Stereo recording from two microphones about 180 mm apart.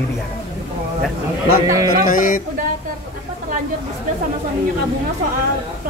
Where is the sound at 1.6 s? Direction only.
20° right (ahead or behind).